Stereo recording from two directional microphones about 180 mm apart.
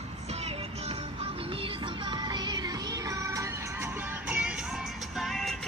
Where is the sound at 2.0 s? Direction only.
25° right (ahead or behind).